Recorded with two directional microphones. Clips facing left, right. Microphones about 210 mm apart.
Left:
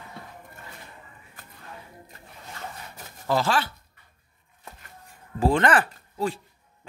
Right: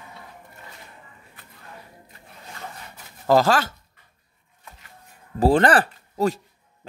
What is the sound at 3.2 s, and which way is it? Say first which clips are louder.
Speech: right 6 dB; 40° right (ahead or behind).